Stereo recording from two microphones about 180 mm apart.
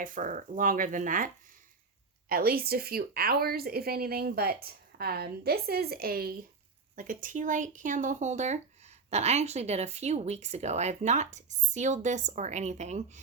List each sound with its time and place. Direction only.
0.0 s speech: 45° right (ahead or behind)
2.3 s speech: 55° right (ahead or behind); by 13.2 s 40° right (ahead or behind)